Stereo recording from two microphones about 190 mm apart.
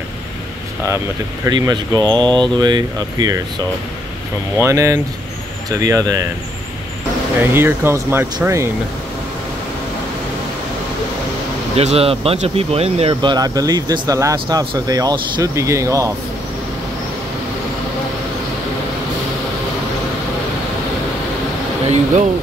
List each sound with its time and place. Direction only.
0.8 s speech: 15° right (ahead or behind)
7.3 s speech: 10° right (ahead or behind)
11.7 s speech: 35° right (ahead or behind); by 16.1 s 15° right (ahead or behind)